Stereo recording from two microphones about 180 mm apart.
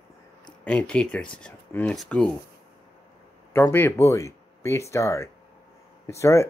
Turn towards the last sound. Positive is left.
turn(degrees=15)  # may be behind; listen again after turning